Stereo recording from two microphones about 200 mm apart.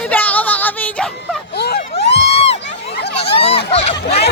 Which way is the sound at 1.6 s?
55° left (ahead or behind).